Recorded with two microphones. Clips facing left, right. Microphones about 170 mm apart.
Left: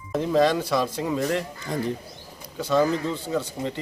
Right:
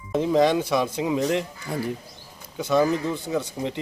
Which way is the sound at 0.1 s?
15° right (ahead or behind).